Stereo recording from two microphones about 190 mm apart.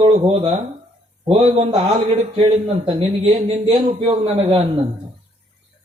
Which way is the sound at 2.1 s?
30° right (ahead or behind).